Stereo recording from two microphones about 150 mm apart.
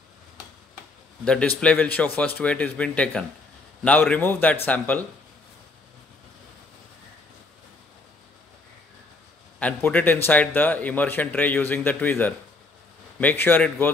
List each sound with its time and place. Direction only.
1.2 s a man's voice: 5° left (ahead or behind)
9.6 s a man's voice: 10° left (ahead or behind)